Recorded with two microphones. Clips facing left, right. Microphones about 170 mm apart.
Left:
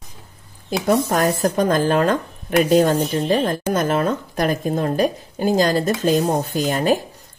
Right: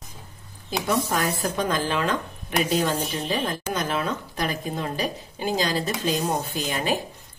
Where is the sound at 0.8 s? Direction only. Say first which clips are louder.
Left 7 dB; 45° left (ahead or behind).